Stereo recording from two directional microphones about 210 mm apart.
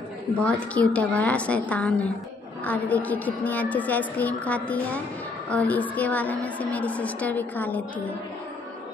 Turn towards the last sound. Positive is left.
turn(degrees=10)  # may be behind; listen again after turning